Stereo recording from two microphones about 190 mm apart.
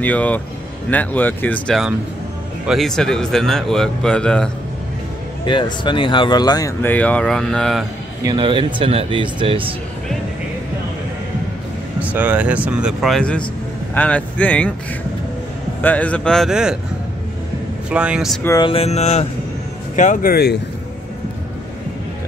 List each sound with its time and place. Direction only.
0.0 s speech: 10° left (ahead or behind)
5.4 s speech: 25° left (ahead or behind); by 7.8 s centre (ahead or behind)
8.2 s speech: 25° right (ahead or behind)
12.0 s speech: 10° right (ahead or behind)
15.8 s speech: 10° left (ahead or behind)
17.8 s speech: 5° right (ahead or behind)
18.4 s speech: 15° left (ahead or behind)
18.7 s mantra: 35° left (ahead or behind)
20.0 s speech: 45° left (ahead or behind)